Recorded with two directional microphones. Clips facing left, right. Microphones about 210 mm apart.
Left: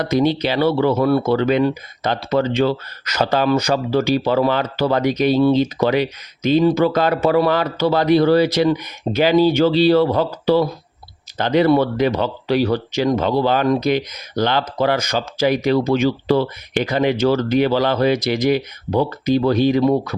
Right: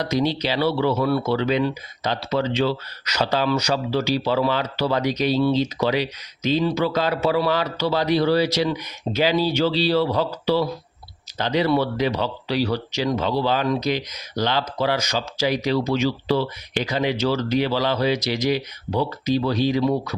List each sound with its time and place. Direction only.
0.0 s speech: 55° left (ahead or behind)